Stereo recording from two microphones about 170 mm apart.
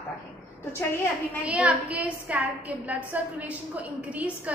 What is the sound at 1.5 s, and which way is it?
A woman's voice, 10° right (ahead or behind).